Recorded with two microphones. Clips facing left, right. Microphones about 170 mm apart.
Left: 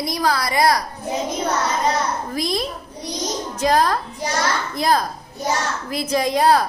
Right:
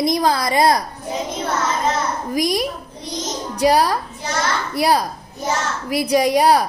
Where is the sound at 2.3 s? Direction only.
15° right (ahead or behind).